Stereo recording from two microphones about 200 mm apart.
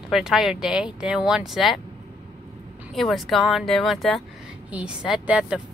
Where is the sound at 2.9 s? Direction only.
Centre (ahead or behind).